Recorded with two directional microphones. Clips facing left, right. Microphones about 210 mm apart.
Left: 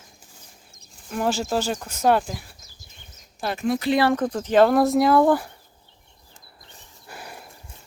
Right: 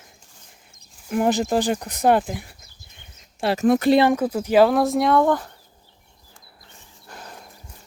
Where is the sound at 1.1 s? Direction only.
15° right (ahead or behind).